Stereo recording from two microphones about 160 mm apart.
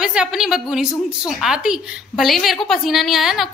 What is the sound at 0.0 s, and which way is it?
A woman's voice, 5° right (ahead or behind).